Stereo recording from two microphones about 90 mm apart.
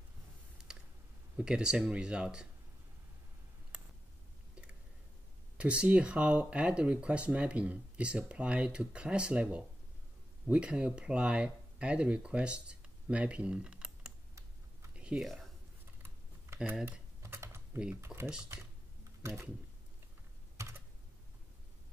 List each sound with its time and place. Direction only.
0.6 s a sound: 5° right (ahead or behind)
1.3 s speech: 10° right (ahead or behind)
5.6 s speech: 15° right (ahead or behind)
15.0 s a sound: 10° right (ahead or behind)
15.2 s speech: 5° left (ahead or behind)
17.2 s typing: 30° right (ahead or behind)
18.0 s speech: 30° right (ahead or behind)